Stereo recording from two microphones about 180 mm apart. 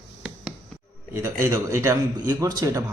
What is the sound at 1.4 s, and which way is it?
A man's voice, 15° right (ahead or behind).